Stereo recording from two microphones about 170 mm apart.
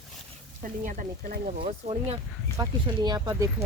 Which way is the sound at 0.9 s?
55° right (ahead or behind).